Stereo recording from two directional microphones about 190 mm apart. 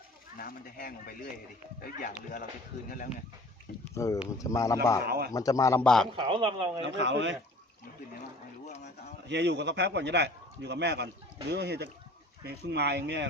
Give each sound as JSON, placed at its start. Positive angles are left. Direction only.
{"t": 0.3, "sound": "speech", "side_deg": 50}
{"t": 3.9, "sound": "speech", "side_deg": 15}
{"t": 5.0, "sound": "a man's voice", "side_deg": -55}
{"t": 5.3, "sound": "speech", "side_deg": 20}
{"t": 5.8, "sound": "a man's voice", "side_deg": 5}
{"t": 6.1, "sound": "speech", "side_deg": -25}
{"t": 6.8, "sound": "speech", "side_deg": -70}
{"t": 8.6, "sound": "a sound", "side_deg": 35}
{"t": 9.2, "sound": "a man's voice", "side_deg": -65}